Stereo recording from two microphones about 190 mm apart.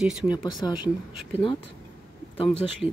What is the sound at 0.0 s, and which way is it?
Speech, 5° right (ahead or behind).